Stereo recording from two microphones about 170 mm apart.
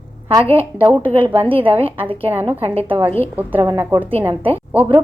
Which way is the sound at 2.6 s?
35° right (ahead or behind).